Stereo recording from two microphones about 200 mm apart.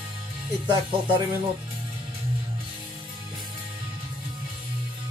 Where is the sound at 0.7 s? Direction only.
25° right (ahead or behind).